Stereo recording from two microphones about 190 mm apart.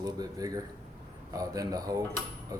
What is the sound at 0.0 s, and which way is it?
A man's voice, 20° right (ahead or behind).